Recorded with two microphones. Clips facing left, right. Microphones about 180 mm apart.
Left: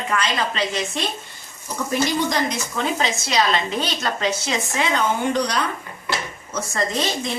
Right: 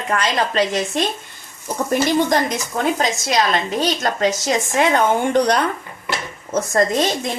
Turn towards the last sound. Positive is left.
turn(degrees=-50)  # may be behind; listen again after turning